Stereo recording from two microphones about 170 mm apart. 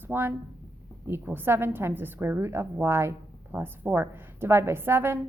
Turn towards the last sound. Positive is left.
turn(degrees=-15)  # may be behind; listen again after turning